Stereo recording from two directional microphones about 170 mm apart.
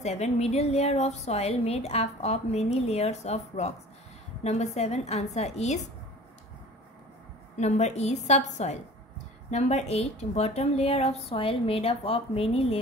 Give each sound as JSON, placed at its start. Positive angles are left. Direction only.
{"t": 0.0, "sound": "a woman's voice", "side_deg": 40}
{"t": 7.5, "sound": "a woman's voice", "side_deg": 40}